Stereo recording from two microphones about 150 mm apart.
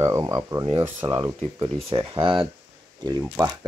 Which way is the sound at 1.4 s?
40° right (ahead or behind).